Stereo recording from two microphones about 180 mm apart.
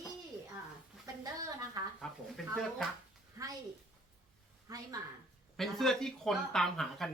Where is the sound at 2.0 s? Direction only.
5° left (ahead or behind).